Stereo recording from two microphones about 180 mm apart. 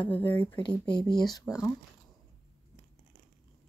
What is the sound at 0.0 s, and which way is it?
Speech, 30° left (ahead or behind).